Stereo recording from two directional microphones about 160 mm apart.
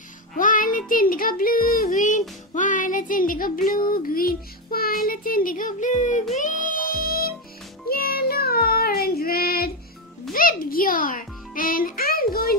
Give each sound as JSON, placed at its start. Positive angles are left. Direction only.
{"t": 0.4, "sound": "a sound", "side_deg": 55}
{"t": 3.9, "sound": "music", "side_deg": 65}
{"t": 7.9, "sound": "child singing", "side_deg": 70}
{"t": 10.3, "sound": "music", "side_deg": 65}